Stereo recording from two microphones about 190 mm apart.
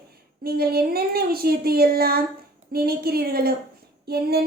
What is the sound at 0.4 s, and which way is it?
A woman's voice, 55° right (ahead or behind).